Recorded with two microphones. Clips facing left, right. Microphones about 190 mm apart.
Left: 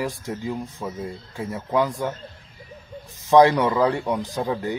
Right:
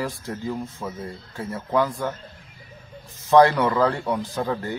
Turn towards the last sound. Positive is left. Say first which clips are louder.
# left 1 dB
turn(degrees=15)  # may be behind; listen again after turning